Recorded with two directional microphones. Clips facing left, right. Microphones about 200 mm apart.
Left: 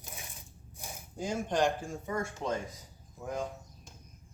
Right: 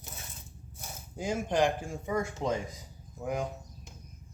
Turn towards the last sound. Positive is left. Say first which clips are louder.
# right 5 dB
turn(degrees=-20)  # may be behind; listen again after turning